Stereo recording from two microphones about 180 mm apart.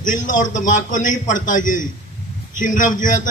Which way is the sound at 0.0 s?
45° left (ahead or behind).